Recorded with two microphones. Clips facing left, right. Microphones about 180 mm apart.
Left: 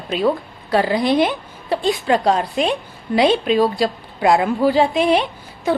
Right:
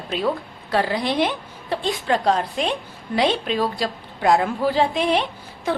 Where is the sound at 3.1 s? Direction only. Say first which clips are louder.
Left 6 dB; 5° left (ahead or behind).